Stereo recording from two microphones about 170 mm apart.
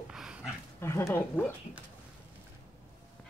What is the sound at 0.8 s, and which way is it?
Speech, 15° left (ahead or behind).